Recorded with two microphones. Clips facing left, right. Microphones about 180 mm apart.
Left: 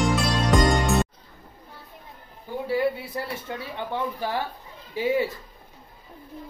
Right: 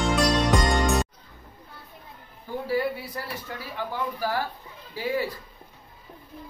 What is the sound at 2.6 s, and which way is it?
A woman's voice, 25° left (ahead or behind).